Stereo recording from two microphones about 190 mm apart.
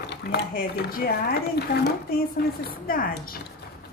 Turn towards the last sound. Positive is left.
turn(degrees=50)  # may be behind; listen again after turning